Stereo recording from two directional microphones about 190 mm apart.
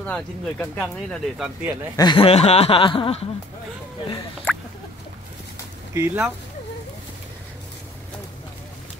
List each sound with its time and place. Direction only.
0.0 s speech: 5° left (ahead or behind)
1.6 s speech: 10° right (ahead or behind)
2.0 s speech: 25° left (ahead or behind)
5.9 s speech: 10° right (ahead or behind)